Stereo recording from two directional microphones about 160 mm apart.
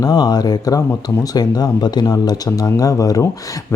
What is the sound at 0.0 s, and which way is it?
Speech, 25° left (ahead or behind).